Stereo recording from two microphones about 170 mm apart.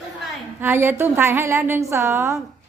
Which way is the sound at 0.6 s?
15° right (ahead or behind).